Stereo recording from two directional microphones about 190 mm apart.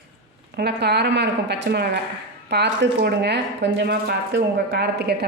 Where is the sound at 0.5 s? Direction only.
60° right (ahead or behind).